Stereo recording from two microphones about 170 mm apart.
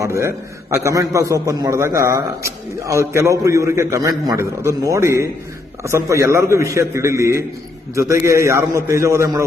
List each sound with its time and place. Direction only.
0.0 s a man's voice: 15° right (ahead or behind)